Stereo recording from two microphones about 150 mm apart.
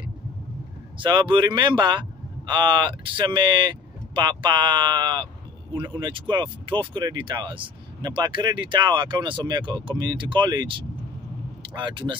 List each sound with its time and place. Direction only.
0.9 s speech: 30° right (ahead or behind)